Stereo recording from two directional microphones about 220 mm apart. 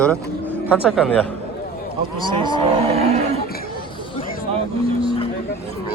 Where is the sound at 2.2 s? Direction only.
20° right (ahead or behind).